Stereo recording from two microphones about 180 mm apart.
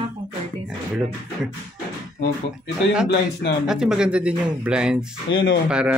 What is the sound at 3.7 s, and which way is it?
Speech, 5° right (ahead or behind).